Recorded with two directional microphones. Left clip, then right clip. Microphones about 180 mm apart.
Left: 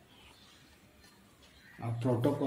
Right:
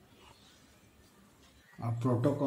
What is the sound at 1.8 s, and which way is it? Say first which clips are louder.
Speech: even; 65° right (ahead or behind).